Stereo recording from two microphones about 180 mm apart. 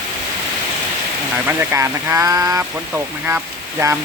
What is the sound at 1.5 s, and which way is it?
Speech, 15° right (ahead or behind).